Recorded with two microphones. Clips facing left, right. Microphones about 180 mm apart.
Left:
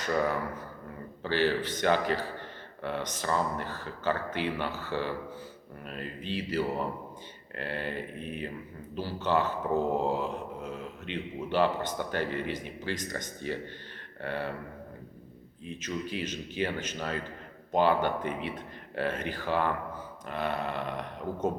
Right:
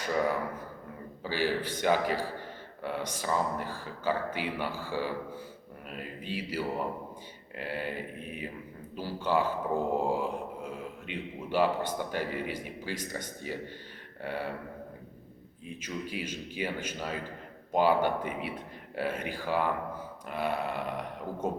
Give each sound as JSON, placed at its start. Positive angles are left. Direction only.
{"t": 1.2, "sound": "speech", "side_deg": -10}
{"t": 15.6, "sound": "speech", "side_deg": -10}